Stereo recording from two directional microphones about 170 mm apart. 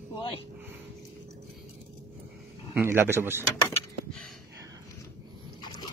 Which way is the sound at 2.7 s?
15° right (ahead or behind).